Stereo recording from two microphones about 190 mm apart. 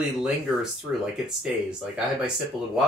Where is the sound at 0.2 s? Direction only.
5° right (ahead or behind).